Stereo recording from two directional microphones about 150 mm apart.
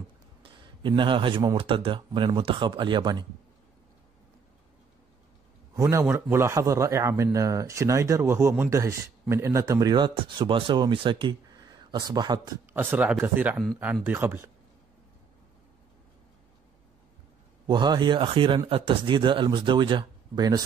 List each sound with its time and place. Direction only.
0.4 s speech: 30° right (ahead or behind)
5.8 s a man's voice: 20° right (ahead or behind)
12.7 s speech: 10° right (ahead or behind)
17.6 s speech: 30° right (ahead or behind)